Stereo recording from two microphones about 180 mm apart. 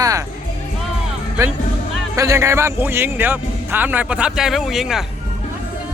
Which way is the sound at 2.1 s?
15° right (ahead or behind).